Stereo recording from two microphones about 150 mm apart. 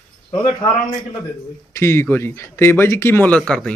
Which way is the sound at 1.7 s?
15° left (ahead or behind).